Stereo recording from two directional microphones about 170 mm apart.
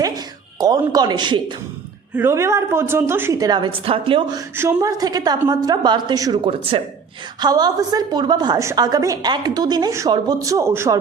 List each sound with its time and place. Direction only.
0.6 s a woman's voice: 25° right (ahead or behind)
2.1 s a woman's voice: 15° right (ahead or behind)
4.5 s a woman's voice: 15° right (ahead or behind)